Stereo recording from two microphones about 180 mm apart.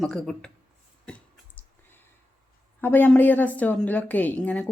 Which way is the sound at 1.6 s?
10° left (ahead or behind).